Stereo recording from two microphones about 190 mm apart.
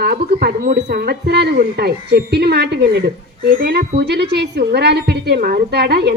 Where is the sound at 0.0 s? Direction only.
55° right (ahead or behind).